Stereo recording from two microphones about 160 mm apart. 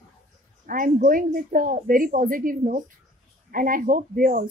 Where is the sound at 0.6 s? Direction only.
60° right (ahead or behind).